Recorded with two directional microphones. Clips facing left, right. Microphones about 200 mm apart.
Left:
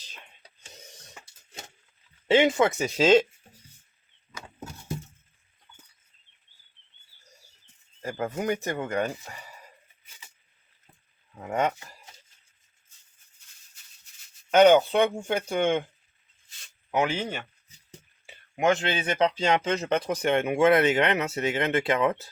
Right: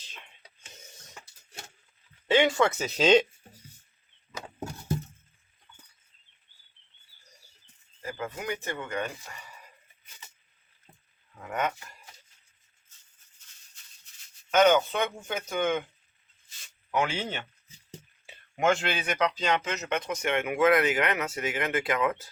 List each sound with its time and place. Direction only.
2.2 s speech: 25° left (ahead or behind); by 3.2 s 5° left (ahead or behind)
8.0 s speech: 40° left (ahead or behind)
11.3 s speech: 25° left (ahead or behind)
14.5 s speech: 30° left (ahead or behind)
16.9 s speech: 20° left (ahead or behind)
18.5 s speech: 20° left (ahead or behind)